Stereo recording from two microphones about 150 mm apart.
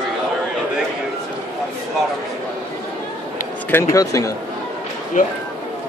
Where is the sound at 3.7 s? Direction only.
20° left (ahead or behind).